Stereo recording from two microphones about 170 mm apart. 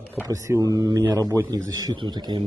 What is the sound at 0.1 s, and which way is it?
A man's voice, 15° right (ahead or behind).